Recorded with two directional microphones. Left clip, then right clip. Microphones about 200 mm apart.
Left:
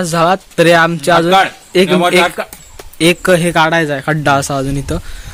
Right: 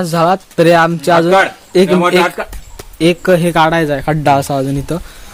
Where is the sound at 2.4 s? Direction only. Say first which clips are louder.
Even; 60° left (ahead or behind).